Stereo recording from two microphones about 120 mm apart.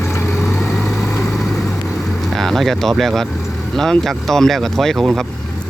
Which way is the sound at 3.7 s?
5° left (ahead or behind).